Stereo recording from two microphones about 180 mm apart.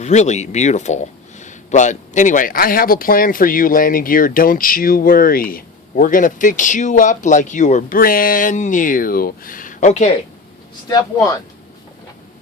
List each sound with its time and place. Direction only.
0.0 s a man's voice: 40° left (ahead or behind)
10.8 s speech: 20° left (ahead or behind)